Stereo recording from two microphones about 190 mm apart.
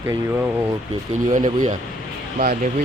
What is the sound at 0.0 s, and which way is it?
Speech, 15° right (ahead or behind).